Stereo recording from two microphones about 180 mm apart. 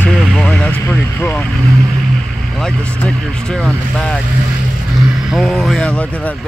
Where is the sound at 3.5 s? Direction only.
5° left (ahead or behind).